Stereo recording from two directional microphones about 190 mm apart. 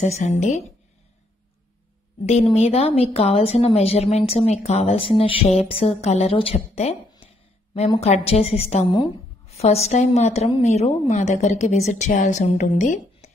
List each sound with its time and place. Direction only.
0.0 s a woman's voice: 35° left (ahead or behind)
2.2 s a woman's voice: 35° left (ahead or behind)